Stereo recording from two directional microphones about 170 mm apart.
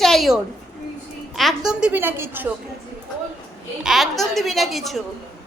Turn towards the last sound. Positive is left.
turn(degrees=0)  # may be behind; listen again after turning